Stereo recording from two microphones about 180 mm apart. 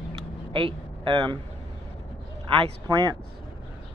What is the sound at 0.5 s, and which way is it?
Speech, 30° right (ahead or behind).